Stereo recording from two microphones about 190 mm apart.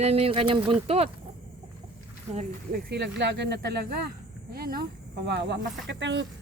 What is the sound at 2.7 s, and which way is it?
Speech, 65° right (ahead or behind).